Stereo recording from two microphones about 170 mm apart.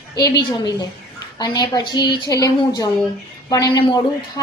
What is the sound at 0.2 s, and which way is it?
A woman's voice, 25° left (ahead or behind).